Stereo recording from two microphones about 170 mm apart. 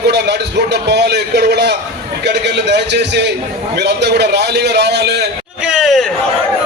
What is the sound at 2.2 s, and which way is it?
A man's voice, 90° right.